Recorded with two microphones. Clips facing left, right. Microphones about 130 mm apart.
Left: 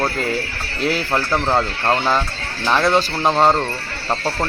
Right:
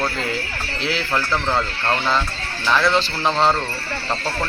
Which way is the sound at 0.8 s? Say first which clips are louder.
Left 5 dB; 50° left (ahead or behind).